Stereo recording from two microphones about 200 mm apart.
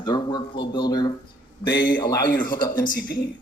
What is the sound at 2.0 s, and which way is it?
Speech, 15° left (ahead or behind).